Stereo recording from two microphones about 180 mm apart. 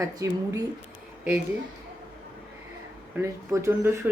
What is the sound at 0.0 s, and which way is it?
Speech, 20° right (ahead or behind).